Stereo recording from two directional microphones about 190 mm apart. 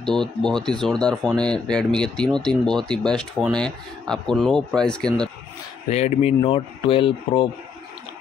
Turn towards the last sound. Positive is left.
turn(degrees=25)  # may be behind; listen again after turning